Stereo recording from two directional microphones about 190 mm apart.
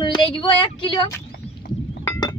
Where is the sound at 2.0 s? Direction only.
20° left (ahead or behind).